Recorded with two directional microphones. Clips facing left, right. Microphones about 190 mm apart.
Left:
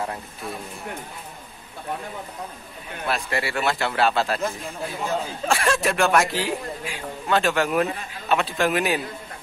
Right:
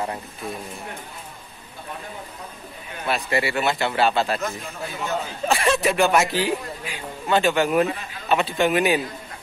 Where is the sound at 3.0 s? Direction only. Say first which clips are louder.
Right 3 dB; centre (ahead or behind).